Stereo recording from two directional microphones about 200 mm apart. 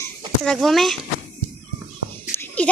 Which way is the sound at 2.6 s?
5° left (ahead or behind).